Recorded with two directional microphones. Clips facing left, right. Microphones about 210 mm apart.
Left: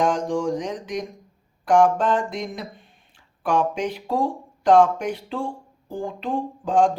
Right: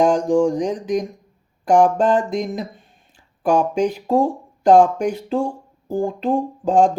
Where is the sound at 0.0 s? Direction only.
40° right (ahead or behind).